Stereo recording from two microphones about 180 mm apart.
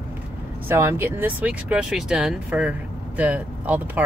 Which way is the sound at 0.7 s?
15° right (ahead or behind).